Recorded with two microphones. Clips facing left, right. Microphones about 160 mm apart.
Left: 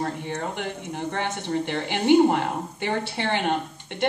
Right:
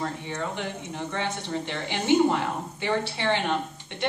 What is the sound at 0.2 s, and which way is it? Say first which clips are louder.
Speech: left 2 dB; 55° left (ahead or behind).